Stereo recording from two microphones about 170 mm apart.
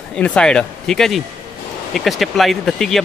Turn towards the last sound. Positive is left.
turn(degrees=0)  # may be behind; listen again after turning